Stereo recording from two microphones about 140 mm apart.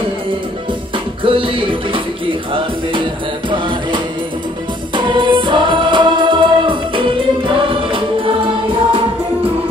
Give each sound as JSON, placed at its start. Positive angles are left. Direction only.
{"t": 0.9, "sound": "music", "side_deg": -40}